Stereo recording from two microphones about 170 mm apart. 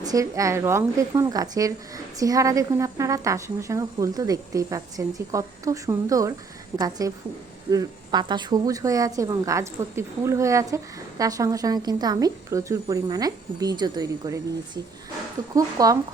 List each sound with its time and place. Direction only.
0.0 s a woman's voice: 20° right (ahead or behind)
15.5 s a woman's voice: 20° right (ahead or behind)